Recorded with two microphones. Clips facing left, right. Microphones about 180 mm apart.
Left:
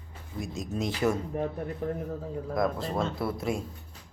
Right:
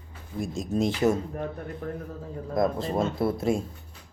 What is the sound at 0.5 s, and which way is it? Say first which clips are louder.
Speech: right 5 dB; 30° right (ahead or behind).